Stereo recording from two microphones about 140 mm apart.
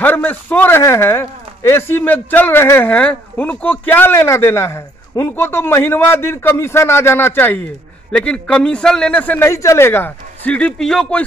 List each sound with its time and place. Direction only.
0.0 s a man's voice: 15° left (ahead or behind)